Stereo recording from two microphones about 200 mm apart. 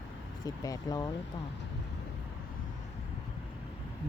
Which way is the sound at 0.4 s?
15° left (ahead or behind).